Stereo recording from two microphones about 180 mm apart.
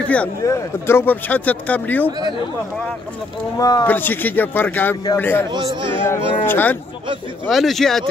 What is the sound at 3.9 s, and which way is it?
A man's voice, 10° left (ahead or behind).